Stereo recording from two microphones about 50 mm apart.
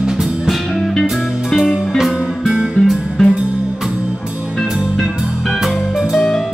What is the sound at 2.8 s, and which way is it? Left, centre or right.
Music, centre.